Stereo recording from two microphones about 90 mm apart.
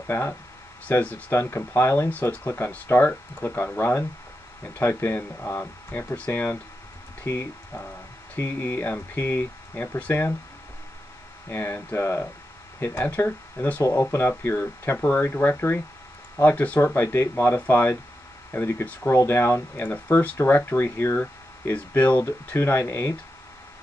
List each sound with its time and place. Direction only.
0.0 s speech: 25° left (ahead or behind)
11.4 s speech: 25° left (ahead or behind)
19.9 s speech: 20° left (ahead or behind)